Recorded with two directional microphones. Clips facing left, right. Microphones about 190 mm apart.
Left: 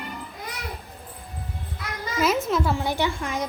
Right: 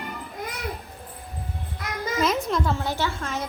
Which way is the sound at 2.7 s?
15° left (ahead or behind).